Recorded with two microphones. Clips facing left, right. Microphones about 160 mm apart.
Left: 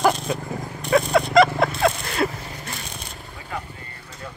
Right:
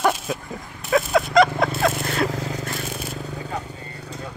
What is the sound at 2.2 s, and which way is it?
Crushing, 90° right.